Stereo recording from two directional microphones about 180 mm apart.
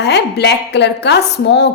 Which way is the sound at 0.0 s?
70° left (ahead or behind).